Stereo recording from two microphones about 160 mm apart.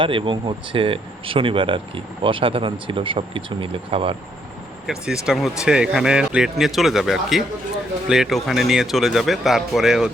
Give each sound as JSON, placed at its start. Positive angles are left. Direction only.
{"t": 0.0, "sound": "speech", "side_deg": -30}
{"t": 4.9, "sound": "speech", "side_deg": -5}